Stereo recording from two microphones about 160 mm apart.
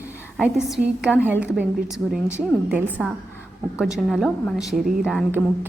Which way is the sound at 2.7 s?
10° right (ahead or behind).